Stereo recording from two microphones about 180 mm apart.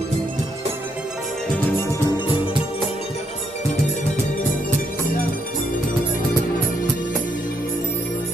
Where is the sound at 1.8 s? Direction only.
15° left (ahead or behind).